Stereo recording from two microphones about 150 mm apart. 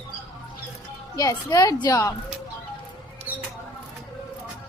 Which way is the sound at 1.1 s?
20° left (ahead or behind).